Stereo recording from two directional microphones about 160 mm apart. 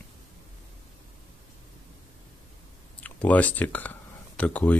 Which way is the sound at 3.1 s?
10° left (ahead or behind).